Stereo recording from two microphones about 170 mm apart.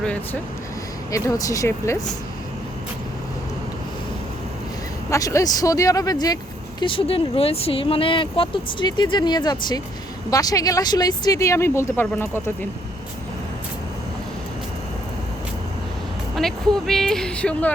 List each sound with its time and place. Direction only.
1.1 s speech: 20° left (ahead or behind)
5.1 s speech: 20° left (ahead or behind)
16.3 s speech: centre (ahead or behind)